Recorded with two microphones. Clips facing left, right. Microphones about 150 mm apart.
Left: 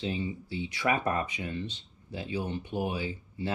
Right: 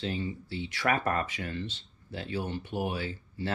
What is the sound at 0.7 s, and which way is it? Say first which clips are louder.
Speech: even; 15° left (ahead or behind).